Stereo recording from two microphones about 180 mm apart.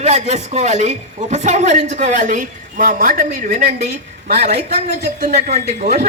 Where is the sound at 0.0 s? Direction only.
40° right (ahead or behind).